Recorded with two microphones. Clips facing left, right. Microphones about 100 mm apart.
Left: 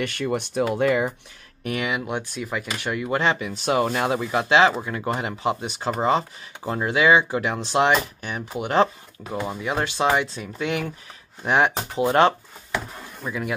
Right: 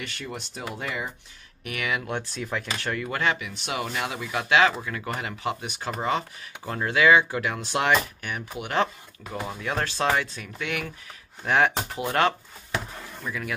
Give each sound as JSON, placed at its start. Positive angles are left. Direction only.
{"t": 0.0, "sound": "speech", "side_deg": 60}
{"t": 1.6, "sound": "speech", "side_deg": 30}
{"t": 3.2, "sound": "speech", "side_deg": 30}
{"t": 10.2, "sound": "speech", "side_deg": 25}